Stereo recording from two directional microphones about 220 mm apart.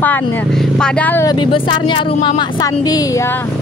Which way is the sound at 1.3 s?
20° left (ahead or behind).